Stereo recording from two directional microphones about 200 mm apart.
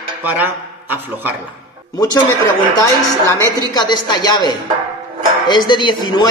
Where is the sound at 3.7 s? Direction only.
20° left (ahead or behind).